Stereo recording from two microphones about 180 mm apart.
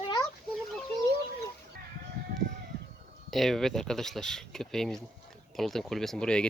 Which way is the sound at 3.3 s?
Centre (ahead or behind).